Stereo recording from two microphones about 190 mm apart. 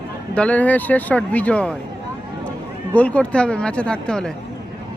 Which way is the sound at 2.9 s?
5° left (ahead or behind).